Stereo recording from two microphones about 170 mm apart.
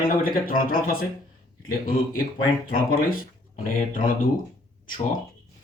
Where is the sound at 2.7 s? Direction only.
60° left (ahead or behind).